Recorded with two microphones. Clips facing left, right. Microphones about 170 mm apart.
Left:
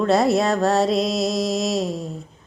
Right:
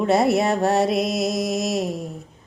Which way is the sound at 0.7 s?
55° right (ahead or behind).